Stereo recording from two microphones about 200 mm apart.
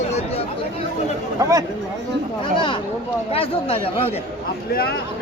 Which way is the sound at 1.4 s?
15° right (ahead or behind).